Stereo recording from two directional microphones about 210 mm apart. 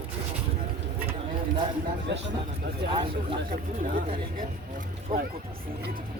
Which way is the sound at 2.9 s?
25° right (ahead or behind).